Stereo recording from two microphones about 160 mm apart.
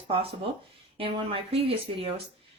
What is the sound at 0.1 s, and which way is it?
Speech, 35° right (ahead or behind).